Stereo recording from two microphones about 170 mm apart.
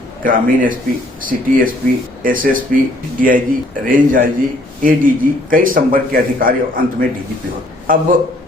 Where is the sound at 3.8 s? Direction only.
55° right (ahead or behind).